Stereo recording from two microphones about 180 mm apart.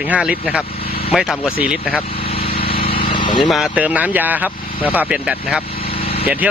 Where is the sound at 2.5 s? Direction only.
30° left (ahead or behind).